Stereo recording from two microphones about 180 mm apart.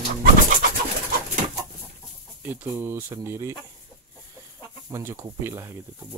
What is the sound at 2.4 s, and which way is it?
Speech, 10° right (ahead or behind).